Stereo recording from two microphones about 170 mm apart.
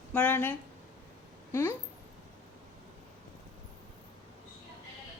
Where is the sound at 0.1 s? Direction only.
10° left (ahead or behind).